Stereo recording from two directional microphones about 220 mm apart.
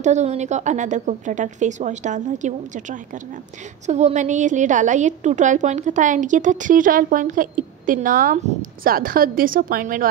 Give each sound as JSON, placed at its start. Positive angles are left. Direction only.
{"t": 0.0, "sound": "a woman's voice", "side_deg": -30}